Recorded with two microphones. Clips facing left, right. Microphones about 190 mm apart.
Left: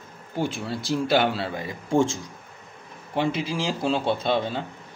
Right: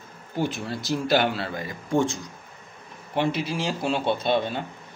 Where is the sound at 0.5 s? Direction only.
30° left (ahead or behind).